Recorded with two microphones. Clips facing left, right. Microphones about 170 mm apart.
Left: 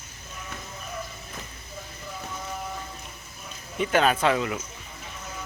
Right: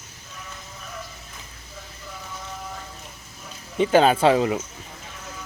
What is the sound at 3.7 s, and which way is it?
Speech, 30° right (ahead or behind).